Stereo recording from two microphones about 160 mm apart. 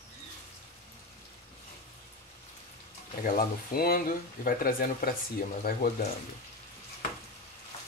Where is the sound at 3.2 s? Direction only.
65° left (ahead or behind).